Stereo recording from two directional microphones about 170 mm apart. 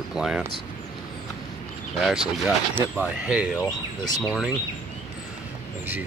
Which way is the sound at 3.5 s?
20° left (ahead or behind).